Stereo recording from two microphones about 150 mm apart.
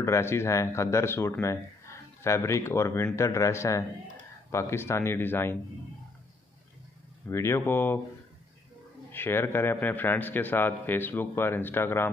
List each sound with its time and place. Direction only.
0.0 s a man's voice: 15° left (ahead or behind)
7.2 s a man's voice: 15° left (ahead or behind)
9.1 s a man's voice: 15° left (ahead or behind)